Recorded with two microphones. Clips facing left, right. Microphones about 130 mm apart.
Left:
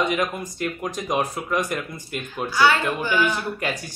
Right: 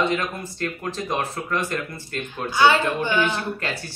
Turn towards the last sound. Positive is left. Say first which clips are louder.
# left 1 dB
turn(degrees=15)  # may be behind; listen again after turning